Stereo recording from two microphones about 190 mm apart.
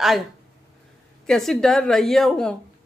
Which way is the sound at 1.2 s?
Centre (ahead or behind).